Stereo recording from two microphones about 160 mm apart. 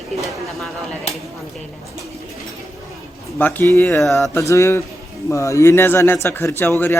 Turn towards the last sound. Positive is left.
turn(degrees=15)  # may be behind; listen again after turning